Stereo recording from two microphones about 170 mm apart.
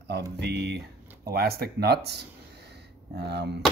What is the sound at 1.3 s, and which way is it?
Speech, 65° right (ahead or behind).